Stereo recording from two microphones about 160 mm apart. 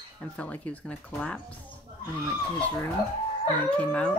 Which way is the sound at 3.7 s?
10° left (ahead or behind).